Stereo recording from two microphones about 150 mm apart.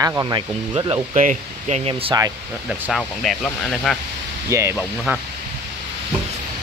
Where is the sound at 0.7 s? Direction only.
35° right (ahead or behind).